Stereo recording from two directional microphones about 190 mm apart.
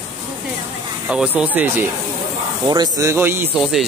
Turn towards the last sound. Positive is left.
turn(degrees=-5)  # may be behind; listen again after turning